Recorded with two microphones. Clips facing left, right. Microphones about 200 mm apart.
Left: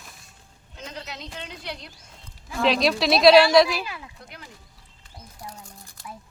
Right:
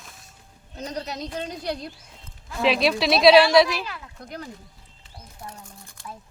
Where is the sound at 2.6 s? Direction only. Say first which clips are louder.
Even; centre (ahead or behind).